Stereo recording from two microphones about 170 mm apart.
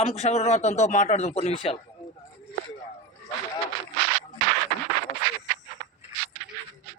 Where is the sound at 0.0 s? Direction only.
40° left (ahead or behind).